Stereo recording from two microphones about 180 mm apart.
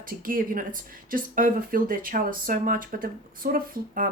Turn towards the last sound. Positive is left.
turn(degrees=-50)  # may be behind; listen again after turning